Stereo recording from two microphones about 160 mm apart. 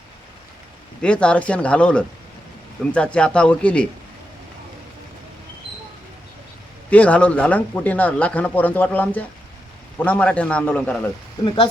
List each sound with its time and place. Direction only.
1.0 s speech: 5° left (ahead or behind)
6.9 s speech: 10° left (ahead or behind)
11.4 s speech: 30° left (ahead or behind)